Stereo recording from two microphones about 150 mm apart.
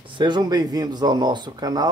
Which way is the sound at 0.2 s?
30° right (ahead or behind).